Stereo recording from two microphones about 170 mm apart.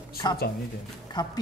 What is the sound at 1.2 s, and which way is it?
Speech, 25° left (ahead or behind).